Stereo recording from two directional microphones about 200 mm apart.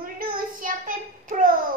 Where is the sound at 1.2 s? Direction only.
45° right (ahead or behind).